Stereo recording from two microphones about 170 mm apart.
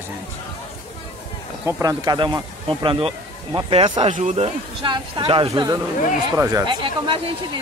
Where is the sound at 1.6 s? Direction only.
15° right (ahead or behind); by 4.1 s 30° right (ahead or behind).